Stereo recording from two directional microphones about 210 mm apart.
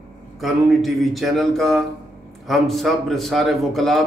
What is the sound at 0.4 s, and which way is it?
A man's voice, centre (ahead or behind).